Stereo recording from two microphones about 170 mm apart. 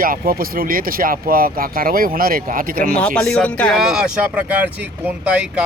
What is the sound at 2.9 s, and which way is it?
Speech, 5° left (ahead or behind).